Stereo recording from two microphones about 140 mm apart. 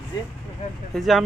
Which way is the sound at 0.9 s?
Centre (ahead or behind).